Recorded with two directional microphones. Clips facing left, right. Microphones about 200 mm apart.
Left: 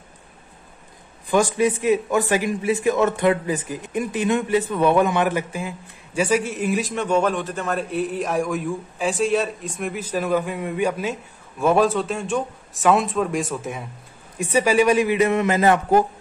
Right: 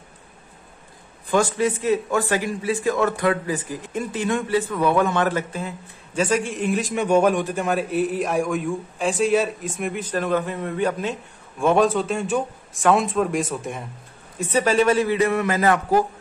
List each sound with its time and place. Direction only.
1.3 s a man's voice: 15° left (ahead or behind)
6.9 s a man's voice: 10° right (ahead or behind); by 16.0 s 25° left (ahead or behind)